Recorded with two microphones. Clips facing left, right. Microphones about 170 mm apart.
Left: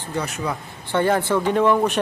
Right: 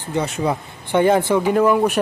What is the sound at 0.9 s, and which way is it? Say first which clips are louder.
Speech: right 4 dB; 15° right (ahead or behind).